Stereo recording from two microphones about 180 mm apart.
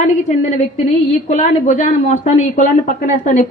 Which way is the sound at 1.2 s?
40° left (ahead or behind).